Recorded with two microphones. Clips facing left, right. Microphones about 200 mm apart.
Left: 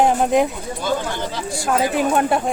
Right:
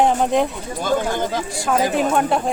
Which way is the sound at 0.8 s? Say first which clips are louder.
Right 3 dB; 50° right (ahead or behind).